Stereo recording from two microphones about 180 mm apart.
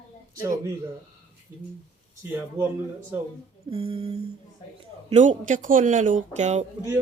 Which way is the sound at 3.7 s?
30° right (ahead or behind).